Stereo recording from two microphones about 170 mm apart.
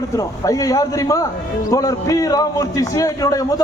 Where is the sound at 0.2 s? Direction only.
20° left (ahead or behind).